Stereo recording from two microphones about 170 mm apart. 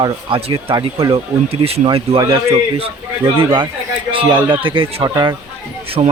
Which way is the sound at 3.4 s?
30° right (ahead or behind).